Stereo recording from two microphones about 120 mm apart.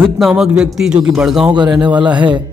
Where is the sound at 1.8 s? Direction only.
40° right (ahead or behind).